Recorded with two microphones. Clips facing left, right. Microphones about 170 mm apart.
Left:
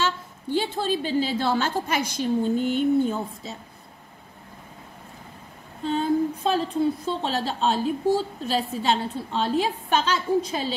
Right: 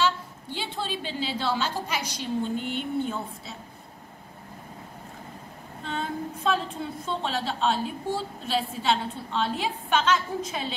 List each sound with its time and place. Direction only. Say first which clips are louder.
0.0 s a woman's voice: right 1 dB; 45° left (ahead or behind)
5.9 s a woman's voice: left 9 dB; 35° left (ahead or behind)